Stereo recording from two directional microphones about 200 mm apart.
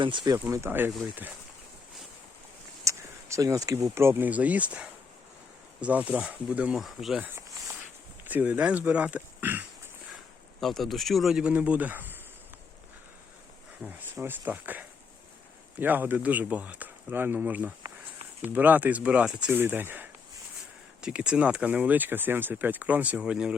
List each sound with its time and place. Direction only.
0.0 s speech: 25° right (ahead or behind)
0.3 s speech: 10° right (ahead or behind)
2.8 s speech: 15° right (ahead or behind)
8.2 s a sound: 10° right (ahead or behind)
10.6 s speech: centre (ahead or behind)
13.8 s speech: 10° right (ahead or behind)